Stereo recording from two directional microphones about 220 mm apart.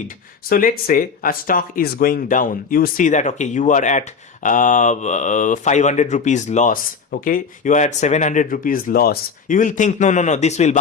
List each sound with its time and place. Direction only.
0.4 s speech: 40° left (ahead or behind)